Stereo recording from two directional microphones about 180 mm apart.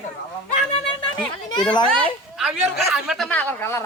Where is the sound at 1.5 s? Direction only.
25° left (ahead or behind).